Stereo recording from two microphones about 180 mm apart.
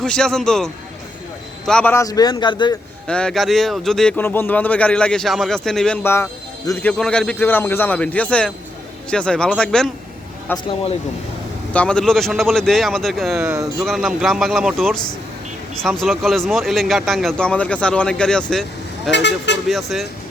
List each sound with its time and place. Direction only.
0.0 s a man's voice: 5° left (ahead or behind); by 2.7 s 25° left (ahead or behind)
3.1 s speech: 5° left (ahead or behind)
11.7 s speech: 5° left (ahead or behind)
16.0 s speech: centre (ahead or behind)
19.1 s speech: 75° left (ahead or behind)
19.6 s speech: centre (ahead or behind)